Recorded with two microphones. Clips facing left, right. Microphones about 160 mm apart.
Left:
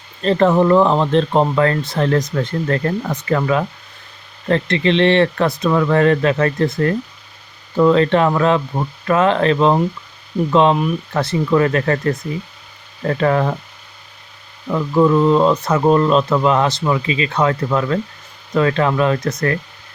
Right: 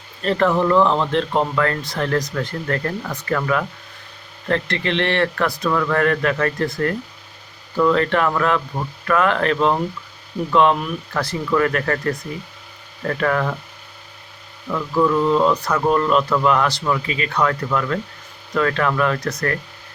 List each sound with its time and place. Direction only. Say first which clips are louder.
0.2 s speech: left 4 dB; 20° left (ahead or behind)
14.7 s speech: left 4 dB; 25° left (ahead or behind)